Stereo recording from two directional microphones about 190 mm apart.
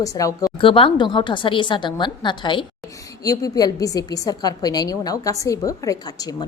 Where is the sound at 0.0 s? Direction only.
15° left (ahead or behind).